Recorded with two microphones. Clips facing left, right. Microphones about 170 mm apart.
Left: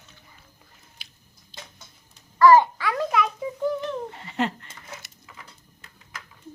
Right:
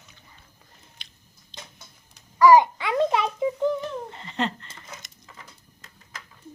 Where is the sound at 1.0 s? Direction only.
5° left (ahead or behind).